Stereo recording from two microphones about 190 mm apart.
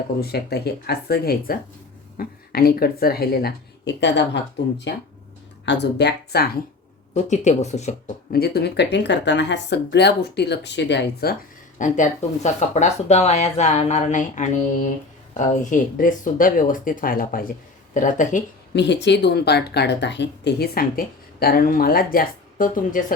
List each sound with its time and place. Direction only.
0.2 s a woman's voice: 55° left (ahead or behind)
7.1 s speech: 40° left (ahead or behind)
8.3 s speech: 55° left (ahead or behind)
11.8 s a woman's voice: 40° left (ahead or behind)
18.7 s speech: 65° left (ahead or behind); by 23.1 s 45° left (ahead or behind)